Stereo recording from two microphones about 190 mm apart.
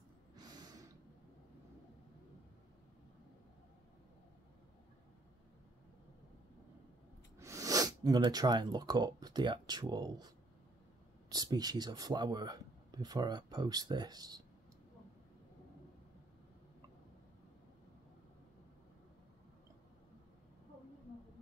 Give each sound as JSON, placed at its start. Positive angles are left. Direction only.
{"t": 0.4, "sound": "snort", "side_deg": -20}
{"t": 7.3, "sound": "speech", "side_deg": -15}